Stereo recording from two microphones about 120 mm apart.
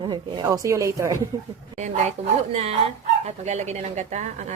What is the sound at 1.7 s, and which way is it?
Speech, 90° right.